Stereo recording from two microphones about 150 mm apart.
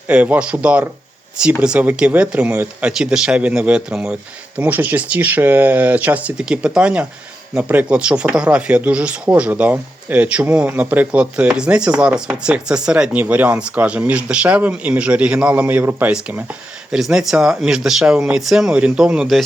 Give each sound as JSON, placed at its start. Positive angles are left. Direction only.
{"t": 0.1, "sound": "speech", "side_deg": -10}